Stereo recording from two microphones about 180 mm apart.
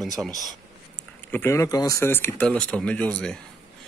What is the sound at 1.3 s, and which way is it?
Speech, 15° left (ahead or behind).